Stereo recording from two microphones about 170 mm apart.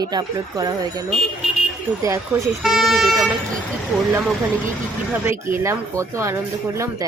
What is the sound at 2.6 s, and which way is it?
Speech, centre (ahead or behind).